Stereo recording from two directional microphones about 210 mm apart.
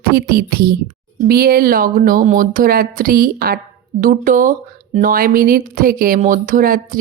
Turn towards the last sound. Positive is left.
turn(degrees=-40)  # may be behind; listen again after turning